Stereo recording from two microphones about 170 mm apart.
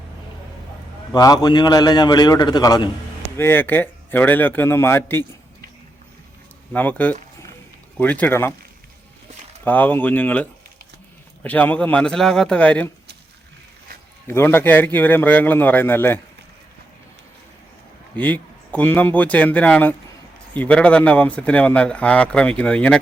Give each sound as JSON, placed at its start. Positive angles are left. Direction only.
{"t": 1.1, "sound": "a man's voice", "side_deg": 20}
{"t": 6.7, "sound": "speech", "side_deg": 10}
{"t": 9.6, "sound": "speech", "side_deg": 10}
{"t": 14.3, "sound": "speech", "side_deg": 15}
{"t": 18.2, "sound": "speech", "side_deg": 10}